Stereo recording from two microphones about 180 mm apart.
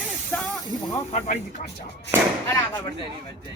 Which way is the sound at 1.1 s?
40° left (ahead or behind).